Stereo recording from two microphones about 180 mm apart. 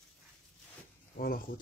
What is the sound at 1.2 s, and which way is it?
Speech, 55° left (ahead or behind).